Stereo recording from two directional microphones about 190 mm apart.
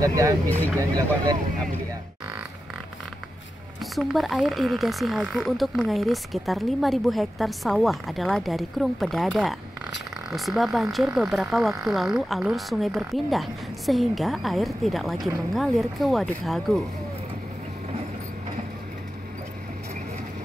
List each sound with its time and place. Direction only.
0.0 s speech: 15° right (ahead or behind)
3.8 s speech: centre (ahead or behind)